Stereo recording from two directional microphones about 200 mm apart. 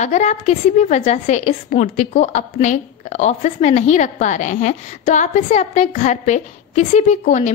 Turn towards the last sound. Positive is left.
turn(degrees=35)  # may be behind; listen again after turning